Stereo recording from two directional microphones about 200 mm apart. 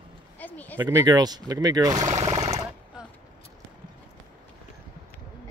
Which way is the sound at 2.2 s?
30° right (ahead or behind).